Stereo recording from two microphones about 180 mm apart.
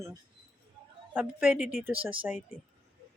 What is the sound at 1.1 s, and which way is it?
Speech, 5° right (ahead or behind).